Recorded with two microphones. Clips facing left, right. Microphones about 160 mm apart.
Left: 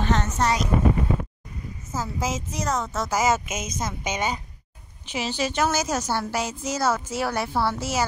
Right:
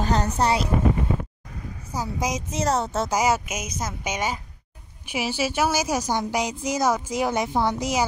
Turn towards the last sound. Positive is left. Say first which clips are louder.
# right 2 dB
turn(degrees=-15)  # may be behind; listen again after turning